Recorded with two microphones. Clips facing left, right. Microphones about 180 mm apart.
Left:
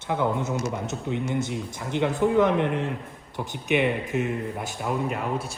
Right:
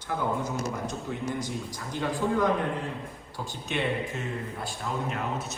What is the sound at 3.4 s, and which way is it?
Speech, 20° left (ahead or behind).